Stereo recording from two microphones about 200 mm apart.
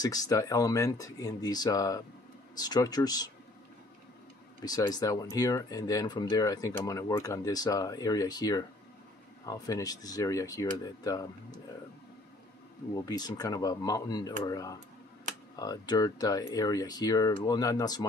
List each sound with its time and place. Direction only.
0.0 s speech: 20° left (ahead or behind)
4.6 s speech: 20° left (ahead or behind)
12.9 s speech: 20° left (ahead or behind)